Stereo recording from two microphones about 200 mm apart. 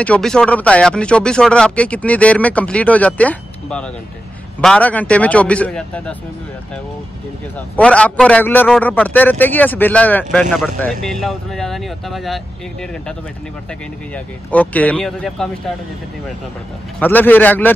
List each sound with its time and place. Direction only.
0.0 s speech: 5° left (ahead or behind)
7.5 s speech: 5° left (ahead or behind)
14.1 s speech: 5° left (ahead or behind)
17.0 s speech: 10° left (ahead or behind)